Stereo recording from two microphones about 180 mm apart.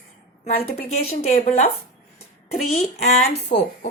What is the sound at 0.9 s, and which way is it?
Speech, 40° left (ahead or behind).